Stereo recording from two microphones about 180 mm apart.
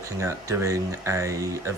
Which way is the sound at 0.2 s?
15° right (ahead or behind).